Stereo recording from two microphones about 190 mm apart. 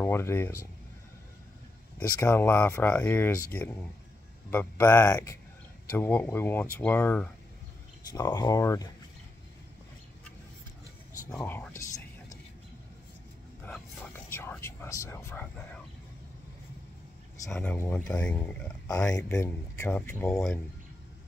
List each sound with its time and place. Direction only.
0.0 s speech: 15° left (ahead or behind)
2.0 s speech: 10° left (ahead or behind)
8.1 s speech: 20° left (ahead or behind)
11.3 s speech: 10° left (ahead or behind)
13.7 s a sound: 5° left (ahead or behind)
17.5 s speech: 10° left (ahead or behind)